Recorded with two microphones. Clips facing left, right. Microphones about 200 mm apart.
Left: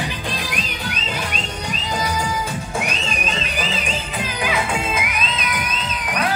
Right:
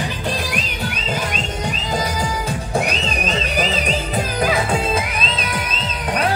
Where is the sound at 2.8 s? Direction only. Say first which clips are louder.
Right 3 dB; 40° right (ahead or behind).